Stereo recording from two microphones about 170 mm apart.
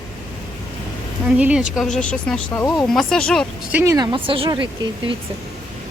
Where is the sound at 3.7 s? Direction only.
15° right (ahead or behind).